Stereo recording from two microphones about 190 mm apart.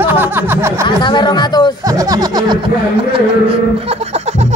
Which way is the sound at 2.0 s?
20° right (ahead or behind).